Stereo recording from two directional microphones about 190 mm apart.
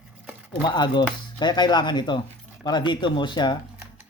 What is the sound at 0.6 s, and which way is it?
Speech, 25° left (ahead or behind).